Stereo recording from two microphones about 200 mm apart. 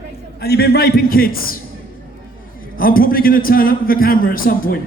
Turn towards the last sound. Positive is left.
turn(degrees=45)  # may be behind; listen again after turning